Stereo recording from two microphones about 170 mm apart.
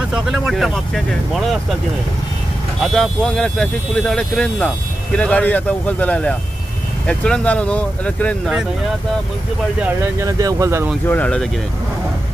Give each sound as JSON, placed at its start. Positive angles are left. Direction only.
{"t": 0.1, "sound": "speech", "side_deg": 0}
{"t": 2.8, "sound": "speech", "side_deg": 0}
{"t": 10.2, "sound": "speech", "side_deg": -20}
{"t": 11.1, "sound": "speech", "side_deg": 10}